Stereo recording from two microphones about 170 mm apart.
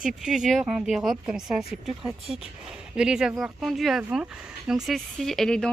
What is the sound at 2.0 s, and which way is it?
Speech, 35° right (ahead or behind).